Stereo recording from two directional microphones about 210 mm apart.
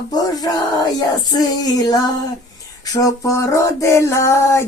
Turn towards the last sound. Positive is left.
turn(degrees=15)  # may be behind; listen again after turning